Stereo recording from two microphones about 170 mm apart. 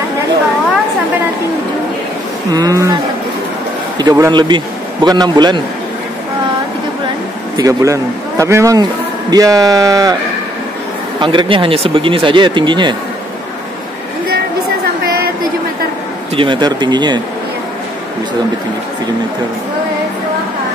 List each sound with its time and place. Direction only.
2.5 s speech: 20° right (ahead or behind)
4.0 s speech: 20° right (ahead or behind)
7.5 s speech: 20° right (ahead or behind)
11.1 s speech: 30° right (ahead or behind)
16.3 s speech: 30° right (ahead or behind)